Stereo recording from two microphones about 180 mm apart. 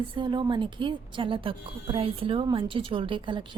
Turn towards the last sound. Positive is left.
turn(degrees=-30)  # may be behind; listen again after turning